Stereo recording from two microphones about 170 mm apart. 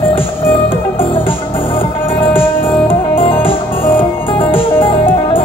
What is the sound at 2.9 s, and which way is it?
Music, 30° left (ahead or behind).